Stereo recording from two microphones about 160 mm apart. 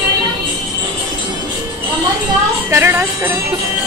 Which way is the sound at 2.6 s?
15° right (ahead or behind).